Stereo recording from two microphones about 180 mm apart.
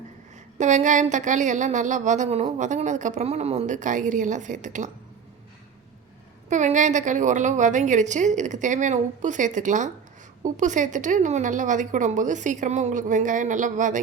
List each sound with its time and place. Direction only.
0.6 s a woman's voice: 40° right (ahead or behind)
6.5 s a woman's voice: 40° right (ahead or behind)